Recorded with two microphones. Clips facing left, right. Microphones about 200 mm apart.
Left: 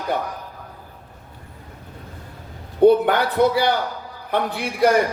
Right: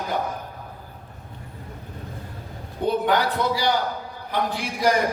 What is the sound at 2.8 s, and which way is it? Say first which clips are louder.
A man's voice: left 7 dB; 60° left (ahead or behind).